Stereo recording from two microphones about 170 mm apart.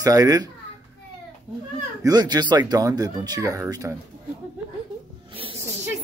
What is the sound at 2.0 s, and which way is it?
Speech, 25° right (ahead or behind).